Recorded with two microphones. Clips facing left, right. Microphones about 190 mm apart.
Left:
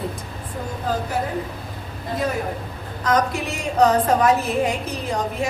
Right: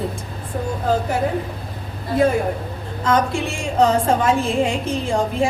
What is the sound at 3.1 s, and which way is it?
A woman's voice, 25° right (ahead or behind).